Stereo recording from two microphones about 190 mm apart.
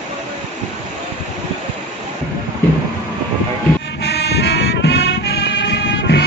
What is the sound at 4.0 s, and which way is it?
Music, 60° left (ahead or behind).